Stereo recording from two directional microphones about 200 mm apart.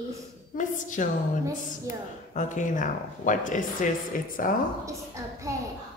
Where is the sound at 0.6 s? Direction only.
40° left (ahead or behind).